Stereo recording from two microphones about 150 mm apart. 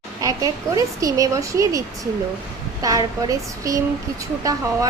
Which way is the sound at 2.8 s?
25° right (ahead or behind).